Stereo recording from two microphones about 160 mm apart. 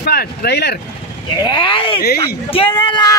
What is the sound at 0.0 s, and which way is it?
Speech, 75° left (ahead or behind).